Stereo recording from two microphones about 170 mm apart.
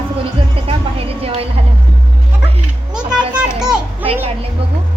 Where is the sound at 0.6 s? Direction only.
35° right (ahead or behind).